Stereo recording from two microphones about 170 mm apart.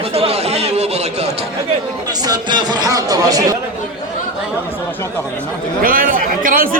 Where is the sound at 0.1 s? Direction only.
35° right (ahead or behind).